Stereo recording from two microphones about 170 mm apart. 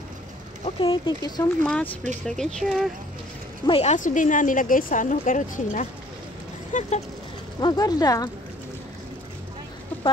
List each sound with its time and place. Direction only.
0.7 s speech: 30° left (ahead or behind)
1.6 s speech: 10° left (ahead or behind)
3.6 s a woman's voice: 35° left (ahead or behind)
7.6 s speech: 25° left (ahead or behind)